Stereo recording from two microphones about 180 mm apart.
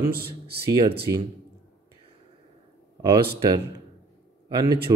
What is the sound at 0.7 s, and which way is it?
Speech, 20° right (ahead or behind).